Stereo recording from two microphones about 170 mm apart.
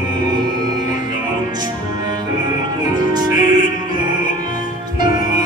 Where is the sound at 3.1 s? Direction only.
25° right (ahead or behind).